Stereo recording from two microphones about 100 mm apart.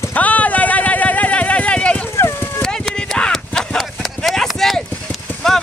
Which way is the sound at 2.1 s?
30° left (ahead or behind).